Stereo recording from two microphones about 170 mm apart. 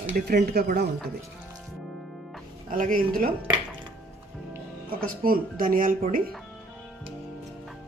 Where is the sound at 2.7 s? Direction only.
55° right (ahead or behind).